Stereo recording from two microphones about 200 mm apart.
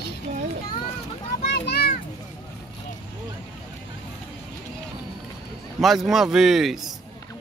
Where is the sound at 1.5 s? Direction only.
55° left (ahead or behind).